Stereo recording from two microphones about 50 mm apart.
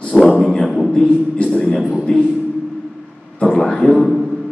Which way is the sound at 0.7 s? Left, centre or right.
Centre.